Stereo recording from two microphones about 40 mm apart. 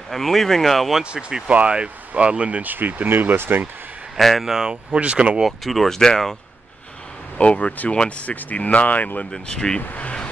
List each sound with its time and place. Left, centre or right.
0.1 s speech: centre
1.5 s speech: right
2.6 s speech: right
4.2 s speech: centre
4.5 s speech: centre
4.9 s speech: right
5.6 s speech: centre
7.3 s speech: left
8.3 s speech: left
9.3 s speech: centre
9.8 s speech: left